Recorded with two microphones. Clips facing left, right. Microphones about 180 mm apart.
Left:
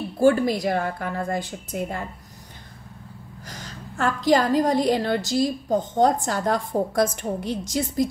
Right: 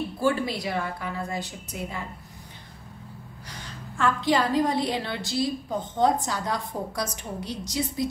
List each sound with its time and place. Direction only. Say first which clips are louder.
0.2 s a woman's voice: left 8 dB; 45° left (ahead or behind)
3.4 s a woman's voice: left 3 dB; 45° left (ahead or behind)